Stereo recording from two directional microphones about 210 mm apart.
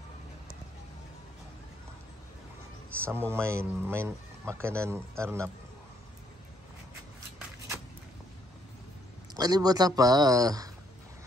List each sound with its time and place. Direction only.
3.1 s speech: 10° right (ahead or behind)
9.3 s speech: 20° right (ahead or behind)